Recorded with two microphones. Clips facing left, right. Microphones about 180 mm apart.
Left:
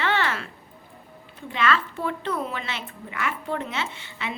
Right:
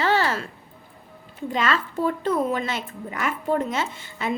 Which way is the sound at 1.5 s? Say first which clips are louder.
Even; 40° right (ahead or behind).